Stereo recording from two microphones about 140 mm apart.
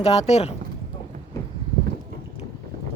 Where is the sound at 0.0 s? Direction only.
50° left (ahead or behind).